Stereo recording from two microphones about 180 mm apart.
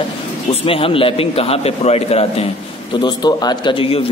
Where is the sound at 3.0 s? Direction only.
25° left (ahead or behind).